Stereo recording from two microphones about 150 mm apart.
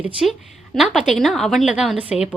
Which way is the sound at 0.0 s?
5° right (ahead or behind).